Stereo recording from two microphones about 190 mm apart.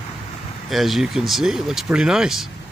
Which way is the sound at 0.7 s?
Centre (ahead or behind).